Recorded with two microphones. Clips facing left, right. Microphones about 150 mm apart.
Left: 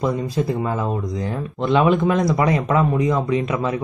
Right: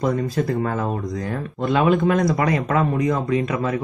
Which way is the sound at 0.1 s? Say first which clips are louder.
Even; 20° left (ahead or behind).